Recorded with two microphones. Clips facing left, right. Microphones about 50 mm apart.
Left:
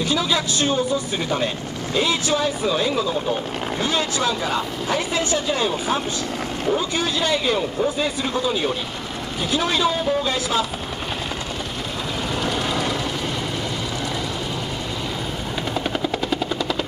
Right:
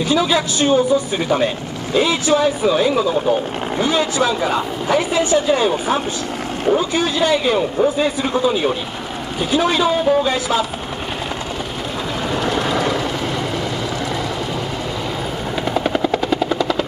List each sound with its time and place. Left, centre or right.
0.1 s a man's voice: centre
12.4 s vehicle: centre
15.7 s helicopter: centre